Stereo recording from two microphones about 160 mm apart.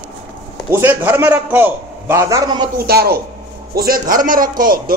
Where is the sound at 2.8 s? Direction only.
75° right (ahead or behind).